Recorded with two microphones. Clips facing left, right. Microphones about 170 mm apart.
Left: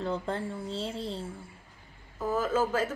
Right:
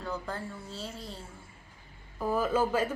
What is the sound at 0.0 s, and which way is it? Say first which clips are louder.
Speech: left 5 dB; 25° left (ahead or behind).